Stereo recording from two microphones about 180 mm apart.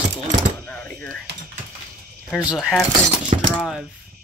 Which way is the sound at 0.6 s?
10° left (ahead or behind).